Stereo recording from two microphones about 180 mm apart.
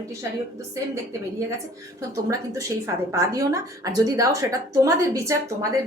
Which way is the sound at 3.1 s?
20° right (ahead or behind).